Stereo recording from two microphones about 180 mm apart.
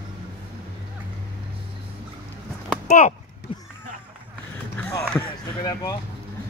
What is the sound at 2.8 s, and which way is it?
Speech, 40° left (ahead or behind).